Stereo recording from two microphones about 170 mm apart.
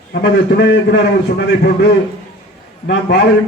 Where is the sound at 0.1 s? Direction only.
80° left.